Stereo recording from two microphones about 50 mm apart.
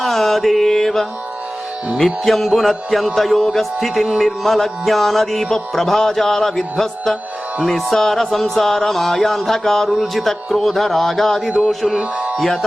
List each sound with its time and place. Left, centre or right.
0.0 s mantra: centre
2.0 s speech: centre
4.4 s mantra: centre
7.6 s speech: centre
7.9 s mantra: centre
9.9 s speech: centre
11.9 s speech: right